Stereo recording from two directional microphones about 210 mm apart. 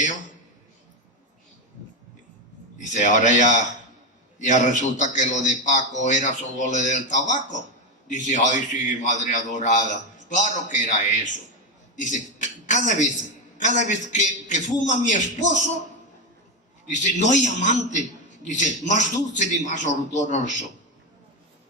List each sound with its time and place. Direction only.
2.9 s a man's voice: 35° left (ahead or behind)
16.9 s a man's voice: 35° left (ahead or behind)